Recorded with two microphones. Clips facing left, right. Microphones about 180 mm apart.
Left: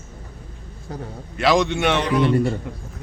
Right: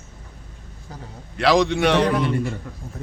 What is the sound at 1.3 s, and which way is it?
Speech, centre (ahead or behind).